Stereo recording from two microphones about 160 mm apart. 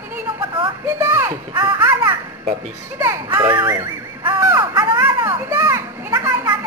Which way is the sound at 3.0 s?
15° right (ahead or behind).